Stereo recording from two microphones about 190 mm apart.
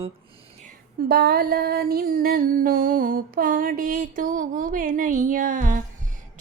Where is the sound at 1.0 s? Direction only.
55° right (ahead or behind).